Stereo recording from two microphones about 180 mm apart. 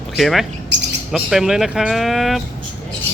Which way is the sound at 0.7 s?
75° right (ahead or behind).